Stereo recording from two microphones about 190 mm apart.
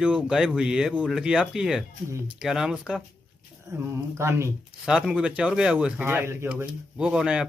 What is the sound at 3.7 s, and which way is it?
Speech, 15° right (ahead or behind).